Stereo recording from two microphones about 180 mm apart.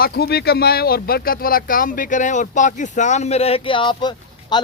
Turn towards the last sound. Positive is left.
turn(degrees=25)  # may be behind; listen again after turning